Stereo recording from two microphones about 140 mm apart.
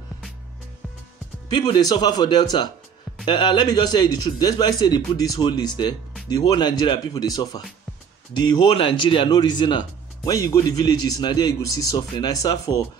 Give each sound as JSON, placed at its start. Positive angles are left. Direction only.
{"t": 1.5, "sound": "speech", "side_deg": 30}
{"t": 8.7, "sound": "speech", "side_deg": 40}